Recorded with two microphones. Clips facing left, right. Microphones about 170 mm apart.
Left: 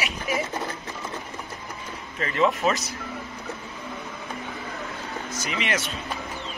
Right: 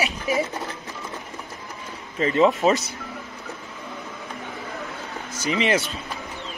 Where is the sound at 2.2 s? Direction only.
25° right (ahead or behind).